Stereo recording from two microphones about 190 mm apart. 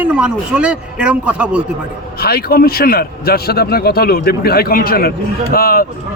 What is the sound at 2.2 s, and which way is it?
A man's voice, 55° left (ahead or behind).